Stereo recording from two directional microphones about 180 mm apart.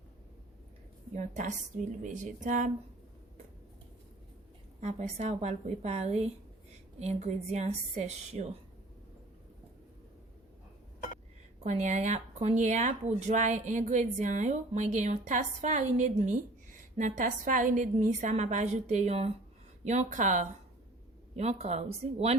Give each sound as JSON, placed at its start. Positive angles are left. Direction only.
{"t": 1.1, "sound": "a woman's voice", "side_deg": -45}
{"t": 4.8, "sound": "speech", "side_deg": -40}
{"t": 11.6, "sound": "a woman's voice", "side_deg": -40}